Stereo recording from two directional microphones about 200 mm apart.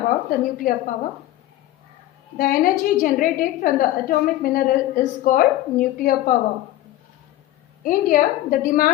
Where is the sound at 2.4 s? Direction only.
45° left (ahead or behind).